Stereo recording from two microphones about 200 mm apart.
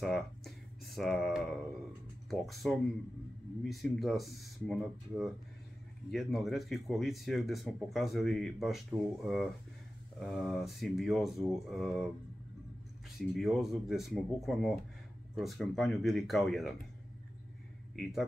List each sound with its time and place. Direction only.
0.0 s speech: centre (ahead or behind)
13.2 s speech: centre (ahead or behind)
17.9 s speech: centre (ahead or behind)